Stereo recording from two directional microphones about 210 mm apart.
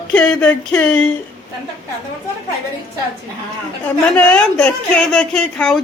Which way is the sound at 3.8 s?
10° left (ahead or behind).